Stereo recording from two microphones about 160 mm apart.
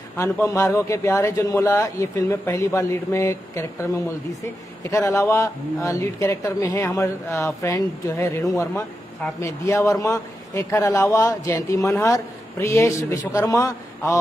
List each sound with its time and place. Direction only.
0.2 s speech: 20° left (ahead or behind)
4.9 s a man's voice: 15° left (ahead or behind)